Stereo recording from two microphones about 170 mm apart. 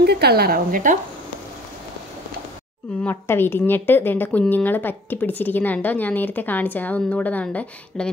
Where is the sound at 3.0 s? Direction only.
15° left (ahead or behind).